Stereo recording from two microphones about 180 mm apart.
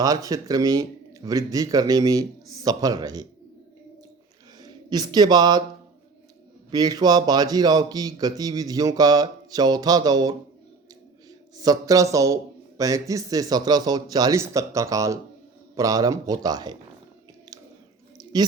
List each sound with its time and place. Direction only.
0.0 s speech: 20° right (ahead or behind)
4.6 s speech: 20° right (ahead or behind)
6.7 s speech: 20° right (ahead or behind)
11.5 s speech: 20° right (ahead or behind)
18.2 s a sound: 20° right (ahead or behind)